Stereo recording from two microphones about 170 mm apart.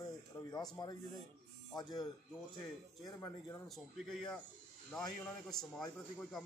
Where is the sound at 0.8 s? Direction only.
25° left (ahead or behind).